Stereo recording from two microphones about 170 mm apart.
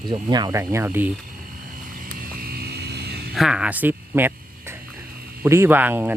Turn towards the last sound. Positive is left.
turn(degrees=-10)  # may be behind; listen again after turning